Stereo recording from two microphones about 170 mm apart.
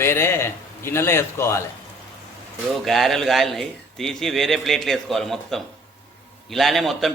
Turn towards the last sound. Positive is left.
turn(degrees=0)  # may be behind; listen again after turning